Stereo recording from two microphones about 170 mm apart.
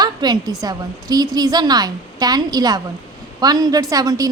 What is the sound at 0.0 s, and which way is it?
A woman's voice, 25° right (ahead or behind).